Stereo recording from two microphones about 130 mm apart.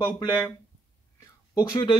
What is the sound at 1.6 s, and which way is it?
Speech, 35° left (ahead or behind).